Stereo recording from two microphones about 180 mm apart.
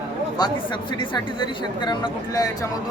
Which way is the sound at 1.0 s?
25° left (ahead or behind).